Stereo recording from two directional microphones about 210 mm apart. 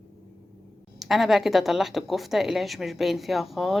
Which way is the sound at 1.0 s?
Centre (ahead or behind).